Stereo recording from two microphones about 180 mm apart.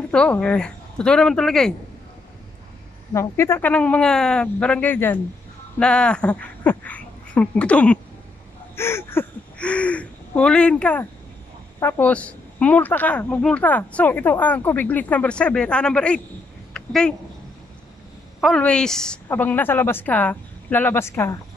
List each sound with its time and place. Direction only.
0.1 s speech: 5° left (ahead or behind)
3.1 s speech: 15° left (ahead or behind)
16.7 s a sound: 5° left (ahead or behind)
18.4 s speech: 5° left (ahead or behind)